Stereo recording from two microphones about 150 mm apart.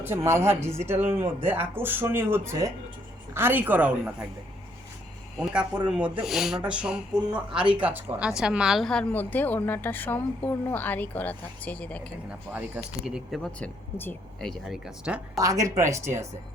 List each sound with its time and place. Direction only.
0.0 s speech: 15° right (ahead or behind)
5.4 s a woman's voice: 5° right (ahead or behind)
12.5 s speech: 10° right (ahead or behind)
13.6 s a woman's voice: 10° left (ahead or behind); by 15.2 s 5° right (ahead or behind)
15.4 s speech: 20° right (ahead or behind)